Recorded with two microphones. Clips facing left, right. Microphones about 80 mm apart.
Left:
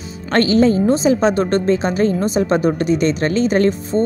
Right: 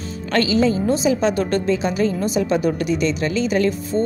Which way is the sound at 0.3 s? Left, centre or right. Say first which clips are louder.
Left 4 dB; left.